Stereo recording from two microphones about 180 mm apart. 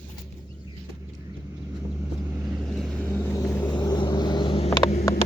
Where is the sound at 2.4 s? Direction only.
Centre (ahead or behind); by 4.7 s 30° left (ahead or behind).